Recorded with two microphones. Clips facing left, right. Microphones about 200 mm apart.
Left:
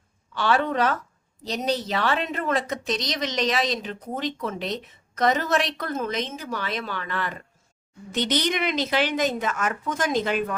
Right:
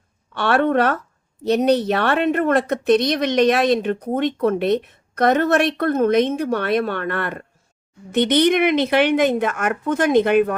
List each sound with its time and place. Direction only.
0.3 s a woman's voice: 65° right (ahead or behind)